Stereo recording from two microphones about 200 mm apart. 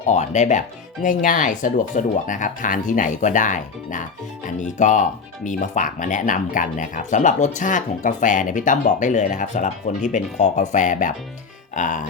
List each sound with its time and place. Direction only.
0.0 s speech: 35° left (ahead or behind)